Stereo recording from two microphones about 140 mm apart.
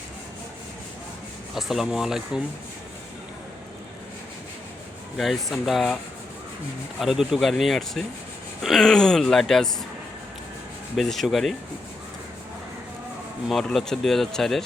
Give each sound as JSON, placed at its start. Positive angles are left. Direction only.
{"t": 1.5, "sound": "speech", "side_deg": 0}
{"t": 5.1, "sound": "speech", "side_deg": 0}
{"t": 7.0, "sound": "speech", "side_deg": 0}
{"t": 10.9, "sound": "speech", "side_deg": 0}
{"t": 13.5, "sound": "speech", "side_deg": 0}